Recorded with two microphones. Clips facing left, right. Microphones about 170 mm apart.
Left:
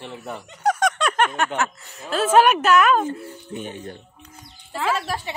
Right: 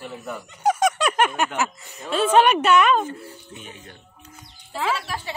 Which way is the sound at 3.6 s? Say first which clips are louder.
Left 9 dB; 35° left (ahead or behind).